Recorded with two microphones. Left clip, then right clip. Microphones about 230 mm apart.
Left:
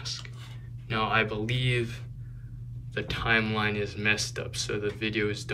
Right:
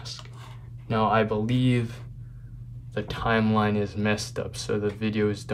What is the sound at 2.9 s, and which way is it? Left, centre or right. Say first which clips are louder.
Speech: right 1 dB; centre.